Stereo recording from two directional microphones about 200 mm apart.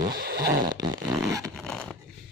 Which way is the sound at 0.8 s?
20° right (ahead or behind).